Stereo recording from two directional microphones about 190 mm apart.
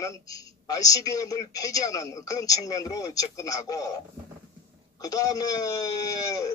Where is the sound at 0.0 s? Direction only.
20° left (ahead or behind).